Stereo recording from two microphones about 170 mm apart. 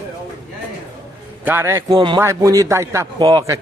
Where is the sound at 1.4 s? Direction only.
10° right (ahead or behind).